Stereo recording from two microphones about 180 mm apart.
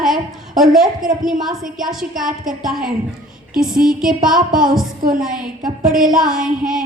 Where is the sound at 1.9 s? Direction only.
Centre (ahead or behind).